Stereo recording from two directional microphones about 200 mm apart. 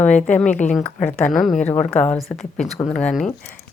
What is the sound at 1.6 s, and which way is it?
Speech, 35° left (ahead or behind).